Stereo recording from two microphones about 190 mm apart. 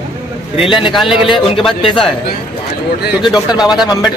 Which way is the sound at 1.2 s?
25° left (ahead or behind).